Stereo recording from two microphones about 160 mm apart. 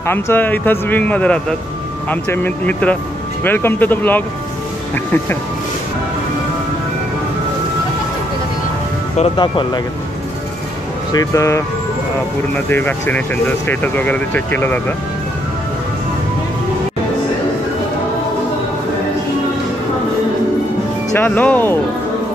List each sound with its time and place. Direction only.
0.0 s speech: 15° left (ahead or behind)
9.2 s speech: 30° left (ahead or behind)
11.1 s speech: 20° left (ahead or behind)
21.1 s speech: 10° left (ahead or behind)